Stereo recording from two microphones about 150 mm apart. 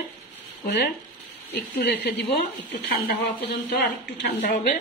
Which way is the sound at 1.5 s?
90° left.